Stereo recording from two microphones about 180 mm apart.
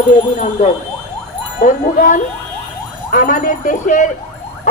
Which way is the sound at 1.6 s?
45° left (ahead or behind).